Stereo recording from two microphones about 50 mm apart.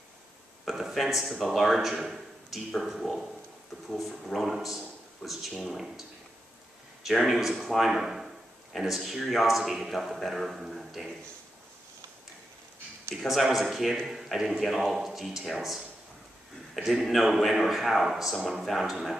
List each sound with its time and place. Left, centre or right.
0.7 s a man's voice: centre
10.7 s a sound: centre
13.3 s a man's voice: centre